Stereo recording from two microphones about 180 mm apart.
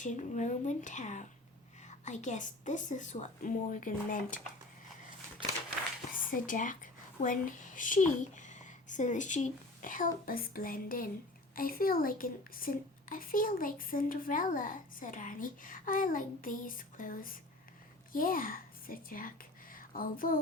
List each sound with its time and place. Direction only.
0.0 s a woman's voice: 40° left (ahead or behind)
6.3 s a woman's voice: 45° left (ahead or behind)